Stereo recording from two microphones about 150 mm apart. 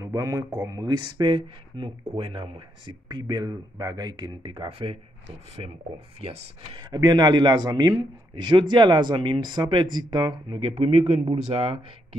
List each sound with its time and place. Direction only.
0.0 s speech: 20° right (ahead or behind); by 4.9 s 40° right (ahead or behind)
6.7 s speech: 30° right (ahead or behind)